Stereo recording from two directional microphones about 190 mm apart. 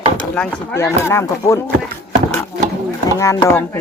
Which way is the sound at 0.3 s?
15° left (ahead or behind).